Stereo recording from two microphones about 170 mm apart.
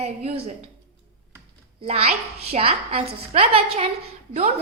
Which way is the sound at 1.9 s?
35° right (ahead or behind).